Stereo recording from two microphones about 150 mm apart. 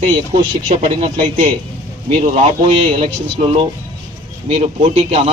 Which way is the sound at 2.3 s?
40° right (ahead or behind).